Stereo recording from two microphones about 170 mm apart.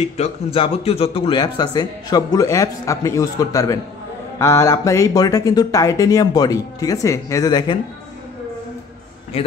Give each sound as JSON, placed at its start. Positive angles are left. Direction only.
{"t": 0.0, "sound": "a man's voice", "side_deg": 35}